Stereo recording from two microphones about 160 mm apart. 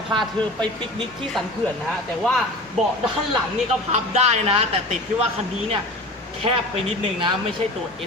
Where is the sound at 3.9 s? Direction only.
45° right (ahead or behind).